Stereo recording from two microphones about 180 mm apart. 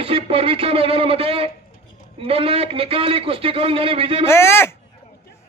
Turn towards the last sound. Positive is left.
turn(degrees=15)  # may be behind; listen again after turning